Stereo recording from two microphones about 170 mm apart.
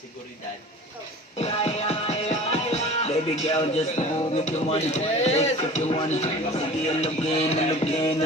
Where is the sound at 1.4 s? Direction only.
35° left (ahead or behind).